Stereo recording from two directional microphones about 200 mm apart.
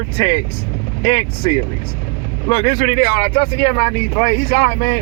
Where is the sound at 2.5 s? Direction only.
20° left (ahead or behind).